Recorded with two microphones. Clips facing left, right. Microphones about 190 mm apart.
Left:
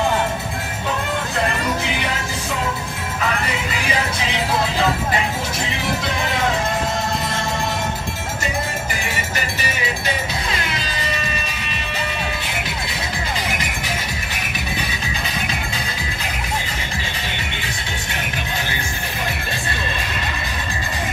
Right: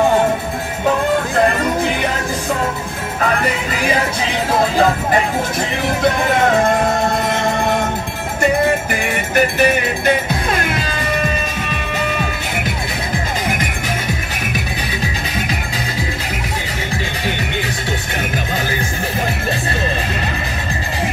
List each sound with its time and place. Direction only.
9.0 s music: 55° right (ahead or behind)